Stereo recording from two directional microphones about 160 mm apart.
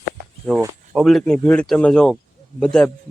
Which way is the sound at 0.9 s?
Centre (ahead or behind).